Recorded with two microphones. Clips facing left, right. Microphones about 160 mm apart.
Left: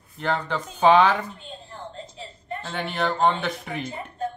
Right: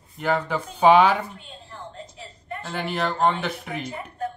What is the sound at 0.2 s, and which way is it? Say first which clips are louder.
Speech: right 2 dB; 5° right (ahead or behind).